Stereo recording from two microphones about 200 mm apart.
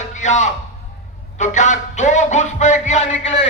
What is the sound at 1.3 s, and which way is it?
A man's voice, 35° left (ahead or behind).